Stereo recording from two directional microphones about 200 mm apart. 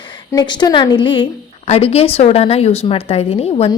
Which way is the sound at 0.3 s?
20° left (ahead or behind).